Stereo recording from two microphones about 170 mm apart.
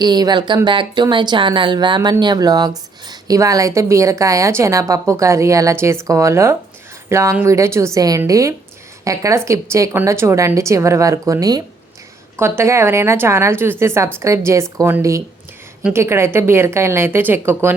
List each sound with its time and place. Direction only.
0.0 s a woman's voice: 25° right (ahead or behind)